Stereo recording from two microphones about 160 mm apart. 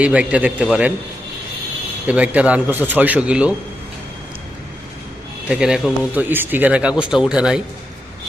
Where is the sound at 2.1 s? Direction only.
10° right (ahead or behind).